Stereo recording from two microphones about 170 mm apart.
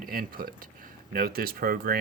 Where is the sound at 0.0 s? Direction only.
60° right (ahead or behind).